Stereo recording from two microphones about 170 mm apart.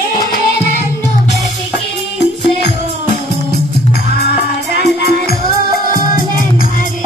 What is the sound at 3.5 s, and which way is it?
Music, 70° left (ahead or behind).